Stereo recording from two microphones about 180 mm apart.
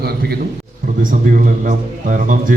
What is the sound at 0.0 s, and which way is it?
Speech, 60° right (ahead or behind).